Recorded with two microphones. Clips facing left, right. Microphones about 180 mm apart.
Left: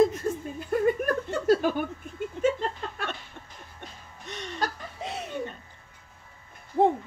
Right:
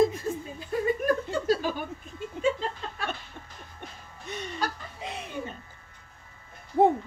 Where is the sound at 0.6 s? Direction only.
55° left (ahead or behind).